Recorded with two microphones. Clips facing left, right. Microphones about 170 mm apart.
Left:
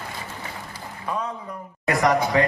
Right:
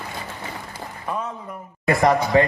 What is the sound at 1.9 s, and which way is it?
Speech, 30° right (ahead or behind).